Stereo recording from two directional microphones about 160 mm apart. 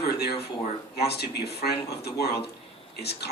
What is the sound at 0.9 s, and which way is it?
Speech, 90° left.